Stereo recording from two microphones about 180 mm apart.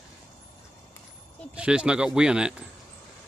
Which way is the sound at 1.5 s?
5° right (ahead or behind).